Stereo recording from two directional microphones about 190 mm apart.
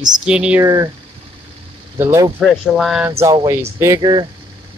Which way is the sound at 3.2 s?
20° right (ahead or behind).